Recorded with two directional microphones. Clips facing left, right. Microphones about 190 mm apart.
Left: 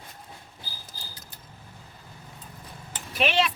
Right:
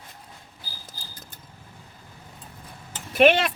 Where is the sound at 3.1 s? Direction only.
55° right (ahead or behind).